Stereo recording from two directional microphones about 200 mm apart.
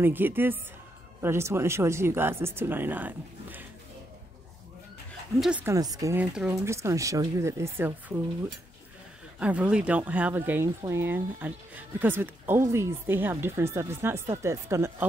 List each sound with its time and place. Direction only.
0.0 s speech: 10° right (ahead or behind)
5.4 s speech: 5° right (ahead or behind)
5.8 s speech: 20° right (ahead or behind)
9.4 s speech: 5° right (ahead or behind)